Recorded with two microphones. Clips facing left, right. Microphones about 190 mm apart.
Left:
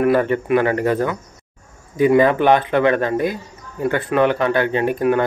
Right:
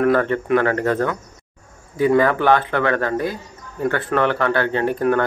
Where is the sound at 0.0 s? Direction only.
10° left (ahead or behind).